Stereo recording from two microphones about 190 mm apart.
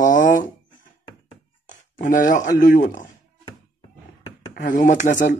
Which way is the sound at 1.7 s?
40° left (ahead or behind).